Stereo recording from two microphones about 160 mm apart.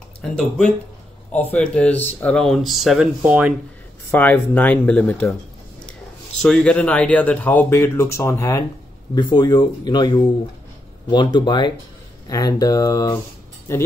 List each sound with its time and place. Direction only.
0.2 s speech: 5° left (ahead or behind)
4.1 s speech: 10° left (ahead or behind)
6.4 s speech: 5° left (ahead or behind); by 13.2 s 25° left (ahead or behind)